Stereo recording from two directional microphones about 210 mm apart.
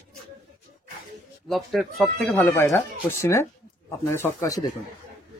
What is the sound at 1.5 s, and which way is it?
Speech, centre (ahead or behind).